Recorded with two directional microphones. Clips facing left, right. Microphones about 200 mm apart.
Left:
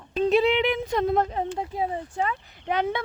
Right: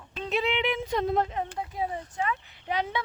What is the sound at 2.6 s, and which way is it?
Speech, 55° left (ahead or behind).